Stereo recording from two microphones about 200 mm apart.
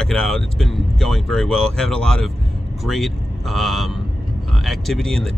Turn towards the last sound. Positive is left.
turn(degrees=0)  # may be behind; listen again after turning